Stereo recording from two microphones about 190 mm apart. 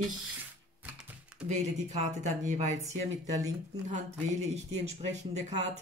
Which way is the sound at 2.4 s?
40° right (ahead or behind).